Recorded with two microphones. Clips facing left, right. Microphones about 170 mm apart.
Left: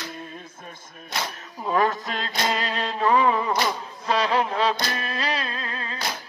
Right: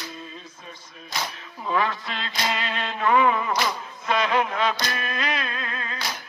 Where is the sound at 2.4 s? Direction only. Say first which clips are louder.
Left 2 dB; 35° left (ahead or behind).